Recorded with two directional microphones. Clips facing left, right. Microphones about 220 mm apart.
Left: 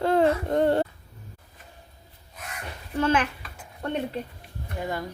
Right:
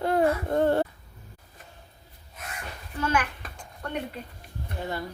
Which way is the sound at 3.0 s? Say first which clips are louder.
Left 4 dB; 25° left (ahead or behind).